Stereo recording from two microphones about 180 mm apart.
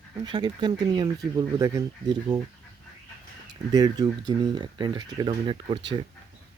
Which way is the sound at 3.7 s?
20° right (ahead or behind).